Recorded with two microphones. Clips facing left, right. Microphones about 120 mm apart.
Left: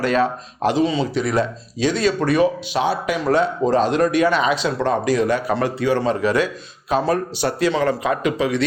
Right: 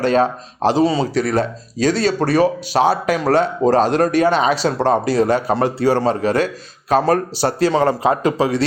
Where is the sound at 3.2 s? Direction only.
75° right (ahead or behind).